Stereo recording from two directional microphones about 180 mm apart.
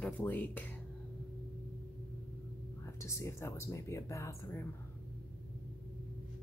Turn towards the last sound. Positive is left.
turn(degrees=15)  # may be behind; listen again after turning